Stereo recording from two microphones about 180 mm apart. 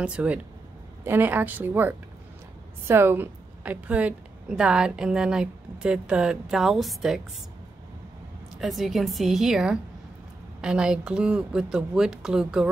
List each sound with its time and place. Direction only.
0.0 s a woman's voice: 5° right (ahead or behind)
8.5 s a woman's voice: centre (ahead or behind)